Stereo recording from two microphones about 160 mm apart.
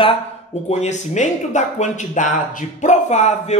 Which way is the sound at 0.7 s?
45° left (ahead or behind).